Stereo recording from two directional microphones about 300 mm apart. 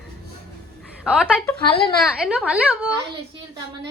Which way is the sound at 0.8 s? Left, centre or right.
Centre.